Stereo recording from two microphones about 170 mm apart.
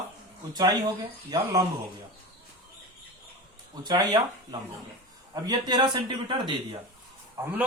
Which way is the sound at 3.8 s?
25° right (ahead or behind).